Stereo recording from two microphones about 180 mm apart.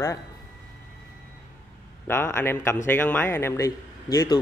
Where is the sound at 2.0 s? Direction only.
15° left (ahead or behind).